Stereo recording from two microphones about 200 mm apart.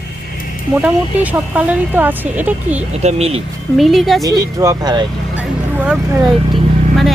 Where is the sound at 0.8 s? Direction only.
10° right (ahead or behind).